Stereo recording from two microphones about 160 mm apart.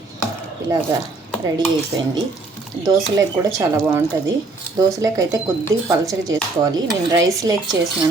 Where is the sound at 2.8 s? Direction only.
20° right (ahead or behind).